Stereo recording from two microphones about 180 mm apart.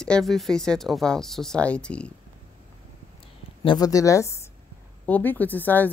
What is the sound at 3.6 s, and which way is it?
Speech, 25° left (ahead or behind).